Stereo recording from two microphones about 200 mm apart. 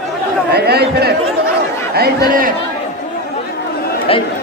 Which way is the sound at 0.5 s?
55° right (ahead or behind).